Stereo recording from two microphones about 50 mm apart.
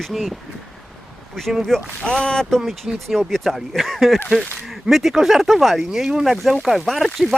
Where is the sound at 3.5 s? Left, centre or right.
Centre.